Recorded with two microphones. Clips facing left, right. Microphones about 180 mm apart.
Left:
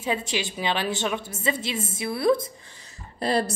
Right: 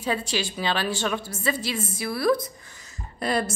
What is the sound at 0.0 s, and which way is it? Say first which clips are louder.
A woman's voice: even; 20° left (ahead or behind).